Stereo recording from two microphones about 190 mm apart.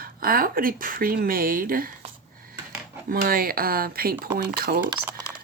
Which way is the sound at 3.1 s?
50° right (ahead or behind).